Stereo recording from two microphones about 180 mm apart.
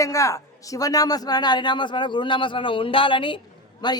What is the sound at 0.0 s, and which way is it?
A man's voice, 15° left (ahead or behind).